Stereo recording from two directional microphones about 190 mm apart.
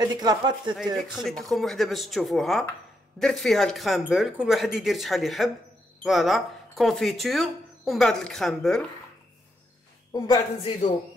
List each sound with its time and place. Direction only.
0.2 s speech: 20° right (ahead or behind)
1.1 s speech: centre (ahead or behind)
10.1 s a woman's voice: 20° left (ahead or behind)